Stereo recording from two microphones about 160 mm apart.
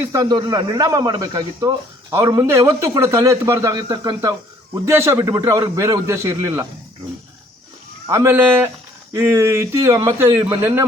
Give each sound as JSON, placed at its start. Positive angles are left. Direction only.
{"t": 0.1, "sound": "speech", "side_deg": -25}
{"t": 8.0, "sound": "speech", "side_deg": -15}